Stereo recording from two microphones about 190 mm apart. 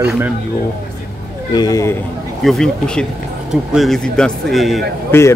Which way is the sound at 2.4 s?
Centre (ahead or behind).